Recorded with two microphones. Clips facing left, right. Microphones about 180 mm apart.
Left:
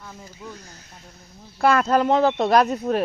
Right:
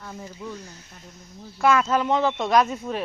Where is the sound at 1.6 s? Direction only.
40° left (ahead or behind).